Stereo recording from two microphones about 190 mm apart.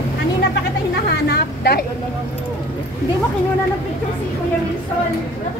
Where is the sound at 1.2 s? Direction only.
55° left (ahead or behind).